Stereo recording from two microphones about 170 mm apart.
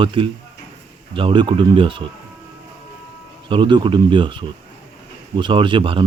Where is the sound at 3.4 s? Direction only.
30° right (ahead or behind).